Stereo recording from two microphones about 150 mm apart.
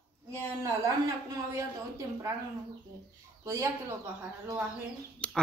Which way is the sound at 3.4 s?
20° right (ahead or behind).